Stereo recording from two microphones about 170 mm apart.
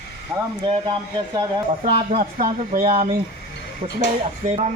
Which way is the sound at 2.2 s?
55° right (ahead or behind).